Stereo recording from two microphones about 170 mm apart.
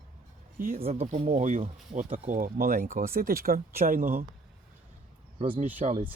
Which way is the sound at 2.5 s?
60° right (ahead or behind).